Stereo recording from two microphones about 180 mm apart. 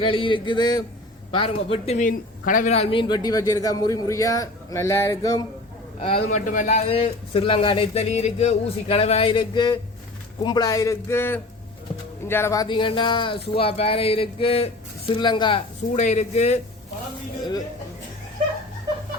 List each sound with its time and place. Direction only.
0.0 s a man's voice: 30° left (ahead or behind)
6.0 s a man's voice: 40° left (ahead or behind)
16.0 s a man's voice: 40° left (ahead or behind)